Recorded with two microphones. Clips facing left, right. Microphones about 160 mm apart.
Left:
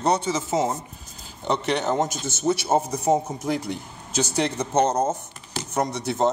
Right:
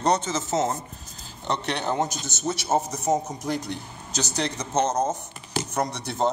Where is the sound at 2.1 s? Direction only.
55° left (ahead or behind).